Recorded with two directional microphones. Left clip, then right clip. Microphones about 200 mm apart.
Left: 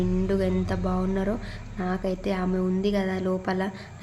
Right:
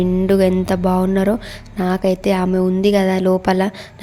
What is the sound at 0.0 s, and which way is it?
A woman's voice, 40° right (ahead or behind).